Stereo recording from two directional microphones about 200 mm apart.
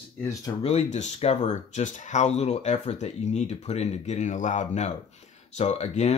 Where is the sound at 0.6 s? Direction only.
30° left (ahead or behind).